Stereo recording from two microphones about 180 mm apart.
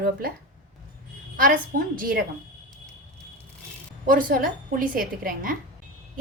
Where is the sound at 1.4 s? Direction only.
50° right (ahead or behind).